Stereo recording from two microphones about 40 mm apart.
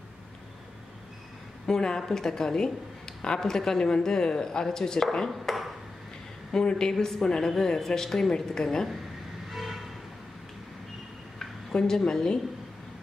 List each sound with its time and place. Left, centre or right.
1.7 s speech: centre
5.4 s ping: centre
6.5 s speech: centre
9.5 s vehicle: centre
11.3 s speech: centre